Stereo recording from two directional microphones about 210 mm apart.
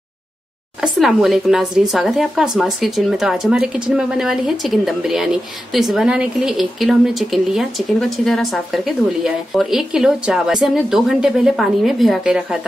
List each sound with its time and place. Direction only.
0.7 s speech: centre (ahead or behind)